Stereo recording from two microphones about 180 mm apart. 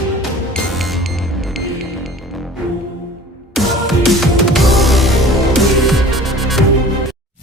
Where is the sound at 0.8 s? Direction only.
Centre (ahead or behind).